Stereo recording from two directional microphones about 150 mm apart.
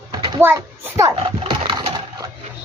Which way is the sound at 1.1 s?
35° right (ahead or behind).